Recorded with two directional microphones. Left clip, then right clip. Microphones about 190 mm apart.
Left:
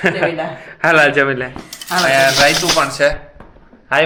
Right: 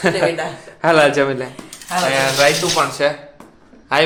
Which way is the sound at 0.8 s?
15° right (ahead or behind).